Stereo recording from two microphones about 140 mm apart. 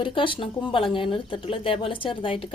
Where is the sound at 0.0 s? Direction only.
35° left (ahead or behind).